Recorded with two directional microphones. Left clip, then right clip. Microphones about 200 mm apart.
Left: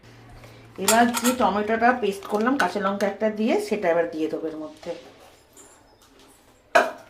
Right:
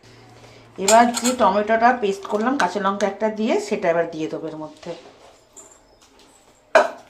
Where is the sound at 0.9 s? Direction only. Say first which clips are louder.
Right 5 dB; 10° right (ahead or behind).